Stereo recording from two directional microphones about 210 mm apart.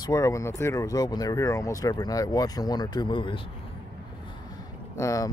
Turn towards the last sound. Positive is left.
turn(degrees=15)  # may be behind; listen again after turning